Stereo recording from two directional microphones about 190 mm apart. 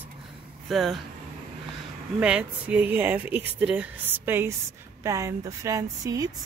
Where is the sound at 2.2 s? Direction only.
5° right (ahead or behind).